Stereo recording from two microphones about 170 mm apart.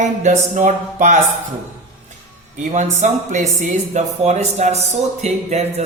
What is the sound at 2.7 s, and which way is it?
Speech, 45° right (ahead or behind).